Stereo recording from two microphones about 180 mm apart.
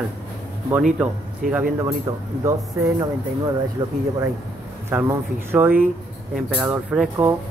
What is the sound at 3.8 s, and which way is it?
Speech, 15° right (ahead or behind).